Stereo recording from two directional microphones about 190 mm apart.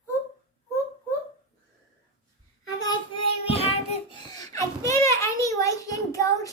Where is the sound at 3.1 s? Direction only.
30° left (ahead or behind).